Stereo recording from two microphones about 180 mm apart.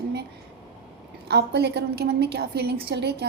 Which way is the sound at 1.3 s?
65° right (ahead or behind).